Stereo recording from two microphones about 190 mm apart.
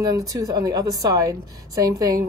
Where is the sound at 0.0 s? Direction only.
20° right (ahead or behind).